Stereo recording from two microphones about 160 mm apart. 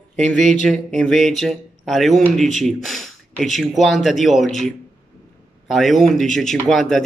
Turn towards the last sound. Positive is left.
turn(degrees=0)  # may be behind; listen again after turning